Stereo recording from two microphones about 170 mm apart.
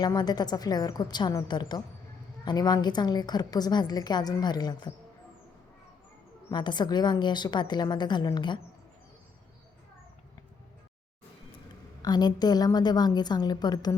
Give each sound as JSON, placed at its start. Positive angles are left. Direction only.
{"t": 0.0, "sound": "a woman's voice", "side_deg": 25}
{"t": 6.5, "sound": "a woman's voice", "side_deg": 25}
{"t": 12.0, "sound": "a woman's voice", "side_deg": 25}